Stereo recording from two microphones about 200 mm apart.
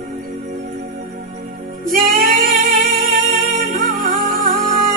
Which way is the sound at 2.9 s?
40° right (ahead or behind).